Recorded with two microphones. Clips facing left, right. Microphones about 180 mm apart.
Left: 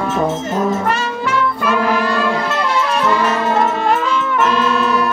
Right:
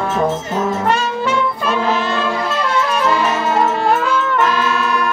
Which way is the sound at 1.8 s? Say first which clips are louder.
Left 1 dB; 25° right (ahead or behind).